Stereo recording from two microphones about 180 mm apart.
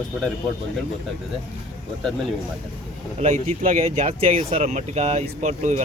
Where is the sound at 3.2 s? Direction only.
40° right (ahead or behind).